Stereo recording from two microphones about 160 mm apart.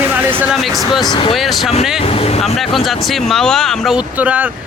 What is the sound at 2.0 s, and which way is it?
Speech, 40° left (ahead or behind).